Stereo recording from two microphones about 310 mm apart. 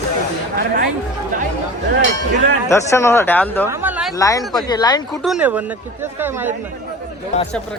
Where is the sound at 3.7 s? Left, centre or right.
Centre.